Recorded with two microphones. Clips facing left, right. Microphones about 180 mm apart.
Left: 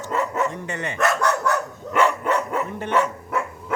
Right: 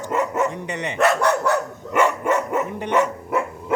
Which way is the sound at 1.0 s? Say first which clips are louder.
Right 3 dB; 30° right (ahead or behind).